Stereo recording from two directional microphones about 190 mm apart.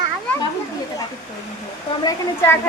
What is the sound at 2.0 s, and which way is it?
Speech, 20° left (ahead or behind).